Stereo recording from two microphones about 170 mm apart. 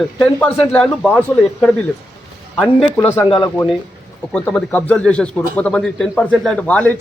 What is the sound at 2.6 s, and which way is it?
Speech, 10° left (ahead or behind).